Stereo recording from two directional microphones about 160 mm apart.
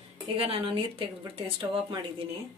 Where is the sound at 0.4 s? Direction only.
35° right (ahead or behind).